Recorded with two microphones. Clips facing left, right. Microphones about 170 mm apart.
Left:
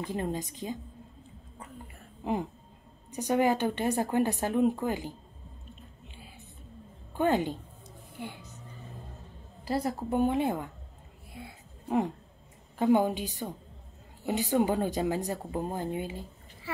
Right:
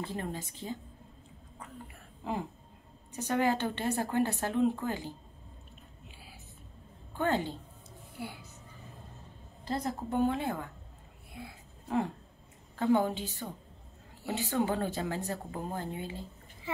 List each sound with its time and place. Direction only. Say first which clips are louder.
0.0 s a woman's voice: left 5 dB; 15° left (ahead or behind)
3.1 s a woman's voice: left 3 dB; 15° left (ahead or behind)
6.0 s a sound: left 2 dB; 5° right (ahead or behind)
7.2 s a woman's voice: left 4 dB; 15° left (ahead or behind)
8.2 s music: left 1 dB; 10° right (ahead or behind)
9.8 s a woman's voice: left 1 dB; 10° left (ahead or behind)
11.4 s speech: left 1 dB; centre (ahead or behind)
12.7 s a woman's voice: left 3 dB; 15° left (ahead or behind)
16.7 s speech: right 1 dB; 20° right (ahead or behind)